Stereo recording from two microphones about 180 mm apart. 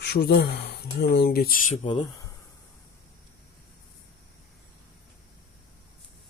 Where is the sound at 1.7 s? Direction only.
25° left (ahead or behind).